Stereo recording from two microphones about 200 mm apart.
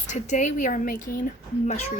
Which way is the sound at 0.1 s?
35° left (ahead or behind).